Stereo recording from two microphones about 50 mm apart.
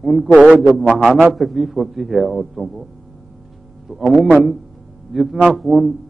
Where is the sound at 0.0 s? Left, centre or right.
Centre.